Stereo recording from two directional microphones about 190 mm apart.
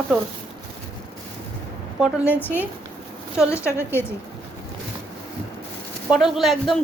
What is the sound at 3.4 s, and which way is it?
Speech, 15° left (ahead or behind).